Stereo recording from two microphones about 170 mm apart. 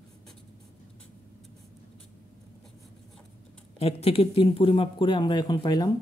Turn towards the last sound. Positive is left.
turn(degrees=25)  # may be behind; listen again after turning